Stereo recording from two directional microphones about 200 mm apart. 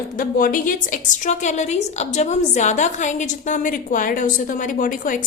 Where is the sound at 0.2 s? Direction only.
45° left (ahead or behind).